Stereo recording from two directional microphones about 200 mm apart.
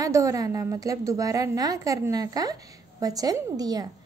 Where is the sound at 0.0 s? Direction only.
15° right (ahead or behind).